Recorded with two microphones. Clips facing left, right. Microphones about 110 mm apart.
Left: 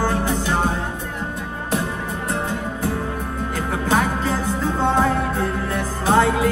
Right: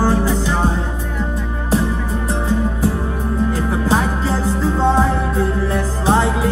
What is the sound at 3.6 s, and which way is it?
Music, 30° right (ahead or behind).